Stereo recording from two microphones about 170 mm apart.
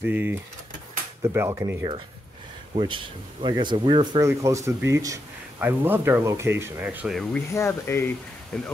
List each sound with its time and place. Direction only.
0.0 s speech: 10° right (ahead or behind)
2.7 s speech: 30° right (ahead or behind); by 7.2 s 10° right (ahead or behind)
7.3 s speech: 15° left (ahead or behind)